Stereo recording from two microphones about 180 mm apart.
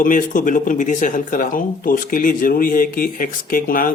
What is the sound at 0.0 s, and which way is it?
Speech, 50° left (ahead or behind).